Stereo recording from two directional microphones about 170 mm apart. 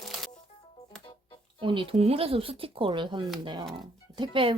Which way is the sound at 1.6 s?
30° right (ahead or behind).